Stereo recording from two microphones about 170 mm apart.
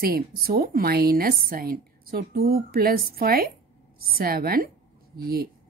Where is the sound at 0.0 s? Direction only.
60° right (ahead or behind).